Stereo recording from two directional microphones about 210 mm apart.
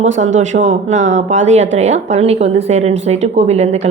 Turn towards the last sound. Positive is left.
turn(degrees=-30)  # may be behind; listen again after turning